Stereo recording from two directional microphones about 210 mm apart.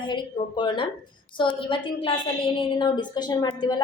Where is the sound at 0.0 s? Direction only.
20° left (ahead or behind).